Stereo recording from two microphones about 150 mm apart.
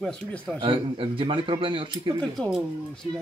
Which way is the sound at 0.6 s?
35° right (ahead or behind).